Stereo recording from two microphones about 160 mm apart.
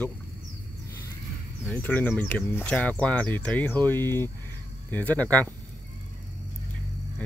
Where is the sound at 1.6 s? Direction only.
10° left (ahead or behind).